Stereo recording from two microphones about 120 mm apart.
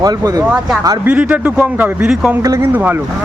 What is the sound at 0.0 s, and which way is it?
Speech, 30° right (ahead or behind).